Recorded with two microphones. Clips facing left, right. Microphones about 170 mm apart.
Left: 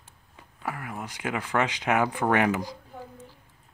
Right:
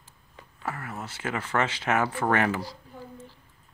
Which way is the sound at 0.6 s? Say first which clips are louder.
Left 1 dB; 10° left (ahead or behind).